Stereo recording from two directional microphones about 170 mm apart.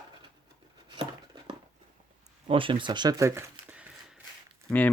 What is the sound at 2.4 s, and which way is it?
Speech, 30° right (ahead or behind).